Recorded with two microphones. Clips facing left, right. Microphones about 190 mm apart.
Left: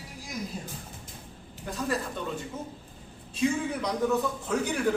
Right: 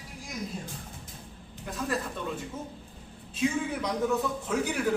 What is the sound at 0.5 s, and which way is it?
A man's voice, centre (ahead or behind).